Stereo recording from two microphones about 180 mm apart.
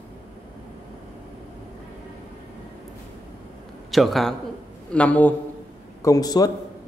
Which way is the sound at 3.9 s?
Centre (ahead or behind).